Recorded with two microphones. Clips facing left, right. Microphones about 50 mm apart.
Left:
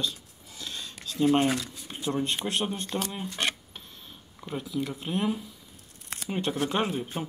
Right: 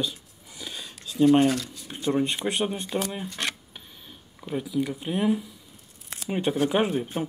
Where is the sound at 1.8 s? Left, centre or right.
Centre.